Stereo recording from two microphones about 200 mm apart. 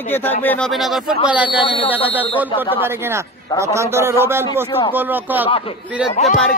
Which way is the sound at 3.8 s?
15° right (ahead or behind).